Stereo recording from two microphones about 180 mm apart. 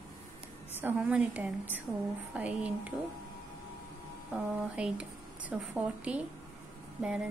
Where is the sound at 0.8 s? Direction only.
5° right (ahead or behind).